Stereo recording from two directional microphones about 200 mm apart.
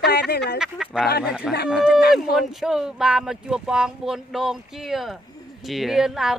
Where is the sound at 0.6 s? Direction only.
5° right (ahead or behind).